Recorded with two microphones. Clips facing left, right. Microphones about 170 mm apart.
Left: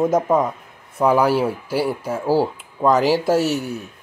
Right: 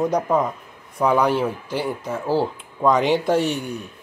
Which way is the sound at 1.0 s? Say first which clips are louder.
Left 2 dB; 5° left (ahead or behind).